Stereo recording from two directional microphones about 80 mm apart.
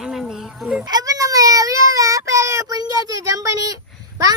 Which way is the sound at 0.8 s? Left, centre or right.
Right.